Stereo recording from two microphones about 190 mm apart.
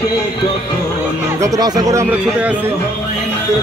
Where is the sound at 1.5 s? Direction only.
20° right (ahead or behind).